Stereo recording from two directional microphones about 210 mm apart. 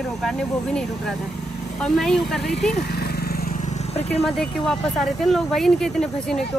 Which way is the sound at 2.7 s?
50° left (ahead or behind).